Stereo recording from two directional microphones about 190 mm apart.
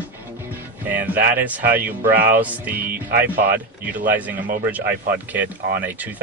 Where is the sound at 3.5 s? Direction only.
10° right (ahead or behind).